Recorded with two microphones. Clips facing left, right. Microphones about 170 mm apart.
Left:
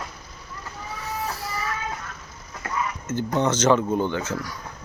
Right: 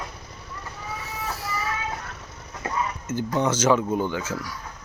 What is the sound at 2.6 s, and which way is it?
Speech, 10° right (ahead or behind).